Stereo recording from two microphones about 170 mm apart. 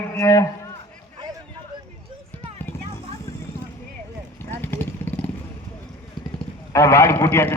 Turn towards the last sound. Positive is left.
turn(degrees=15)  # may be behind; listen again after turning